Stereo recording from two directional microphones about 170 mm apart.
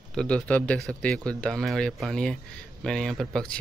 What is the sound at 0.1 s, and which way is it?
Speech, 5° left (ahead or behind).